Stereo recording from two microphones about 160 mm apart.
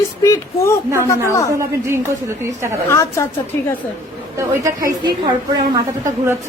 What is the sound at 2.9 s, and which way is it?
Speech, 15° left (ahead or behind).